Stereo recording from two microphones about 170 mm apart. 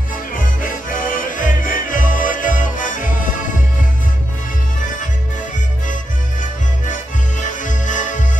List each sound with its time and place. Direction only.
0.3 s music: 50° left (ahead or behind)
6.9 s accordion: 50° left (ahead or behind)